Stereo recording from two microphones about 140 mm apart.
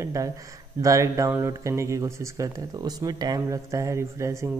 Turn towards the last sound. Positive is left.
turn(degrees=-20)  # may be behind; listen again after turning